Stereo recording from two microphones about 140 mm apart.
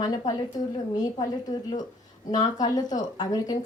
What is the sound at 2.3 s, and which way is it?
Speech, 30° left (ahead or behind).